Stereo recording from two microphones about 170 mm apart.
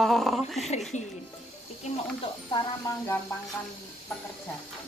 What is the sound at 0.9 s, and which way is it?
Speech, 45° left (ahead or behind).